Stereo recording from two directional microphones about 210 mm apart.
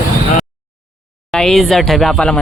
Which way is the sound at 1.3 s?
Centre (ahead or behind).